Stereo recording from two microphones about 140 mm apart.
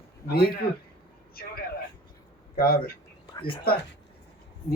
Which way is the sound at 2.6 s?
90° left.